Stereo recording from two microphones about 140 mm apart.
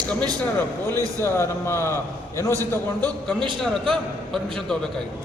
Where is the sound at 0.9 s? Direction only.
20° left (ahead or behind).